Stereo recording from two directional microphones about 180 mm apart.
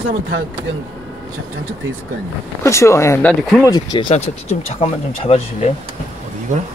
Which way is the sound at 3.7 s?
25° left (ahead or behind).